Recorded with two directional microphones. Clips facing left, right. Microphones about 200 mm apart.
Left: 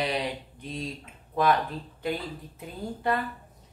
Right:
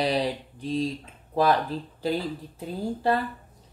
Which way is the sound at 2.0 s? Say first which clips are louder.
Right 4 dB; 30° right (ahead or behind).